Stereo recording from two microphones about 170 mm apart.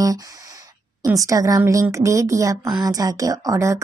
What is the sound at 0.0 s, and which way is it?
A woman's voice, 20° right (ahead or behind).